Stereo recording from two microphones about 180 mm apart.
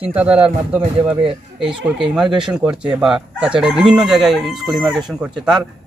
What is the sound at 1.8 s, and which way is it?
A man's voice, 5° right (ahead or behind).